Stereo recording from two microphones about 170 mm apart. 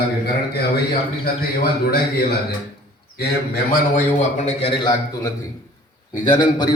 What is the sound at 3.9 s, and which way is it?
A man's voice, 40° left (ahead or behind).